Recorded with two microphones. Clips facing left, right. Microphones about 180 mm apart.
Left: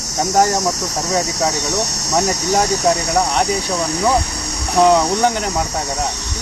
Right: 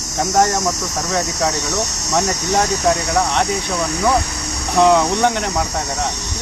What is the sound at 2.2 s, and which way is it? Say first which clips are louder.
Cricket: left 1 dB; 5° left (ahead or behind).